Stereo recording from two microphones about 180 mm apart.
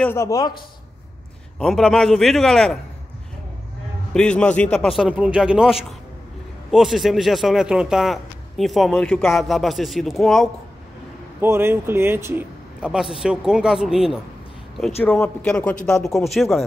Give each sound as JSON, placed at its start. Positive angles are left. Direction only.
{"t": 0.0, "sound": "speech", "side_deg": 15}
{"t": 1.6, "sound": "a man's voice", "side_deg": 0}
{"t": 4.1, "sound": "a man's voice", "side_deg": 5}
{"t": 11.4, "sound": "a man's voice", "side_deg": -15}
{"t": 15.0, "sound": "a man's voice", "side_deg": 10}